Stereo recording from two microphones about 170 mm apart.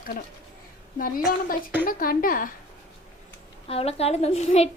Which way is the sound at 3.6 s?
35° left (ahead or behind).